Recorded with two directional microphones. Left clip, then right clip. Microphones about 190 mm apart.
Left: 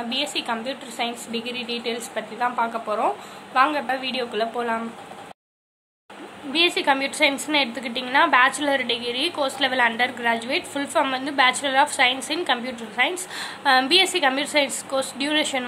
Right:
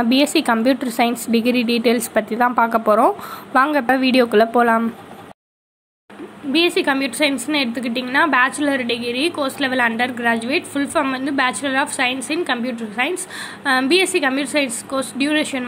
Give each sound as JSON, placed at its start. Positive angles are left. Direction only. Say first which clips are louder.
{"t": 0.1, "sound": "a woman's voice", "louder": "right 7 dB", "side_deg": -40}
{"t": 6.5, "sound": "a woman's voice", "louder": "right 3 dB", "side_deg": -15}